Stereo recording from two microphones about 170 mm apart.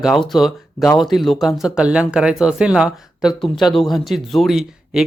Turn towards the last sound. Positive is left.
turn(degrees=-5)  # may be behind; listen again after turning